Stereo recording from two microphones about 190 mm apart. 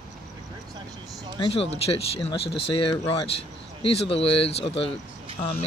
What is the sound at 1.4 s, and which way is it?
Speech, 30° left (ahead or behind).